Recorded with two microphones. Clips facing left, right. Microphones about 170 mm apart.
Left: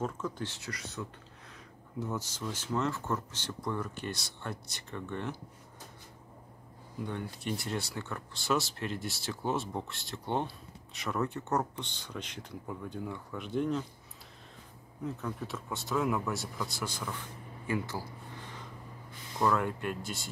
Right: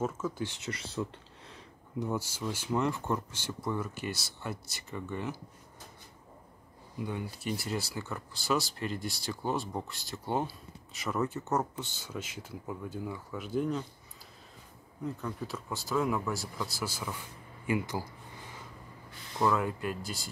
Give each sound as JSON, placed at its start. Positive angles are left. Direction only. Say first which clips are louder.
{"t": 0.0, "sound": "speech", "louder": "right 2 dB", "side_deg": -10}
{"t": 2.0, "sound": "speech", "louder": "right 3 dB", "side_deg": -10}
{"t": 7.0, "sound": "speech", "louder": "right 1 dB", "side_deg": -5}
{"t": 15.0, "sound": "speech", "louder": "even", "side_deg": 0}
{"t": 17.6, "sound": "a sound", "louder": "right 2 dB", "side_deg": -15}
{"t": 19.3, "sound": "speech", "louder": "even", "side_deg": 0}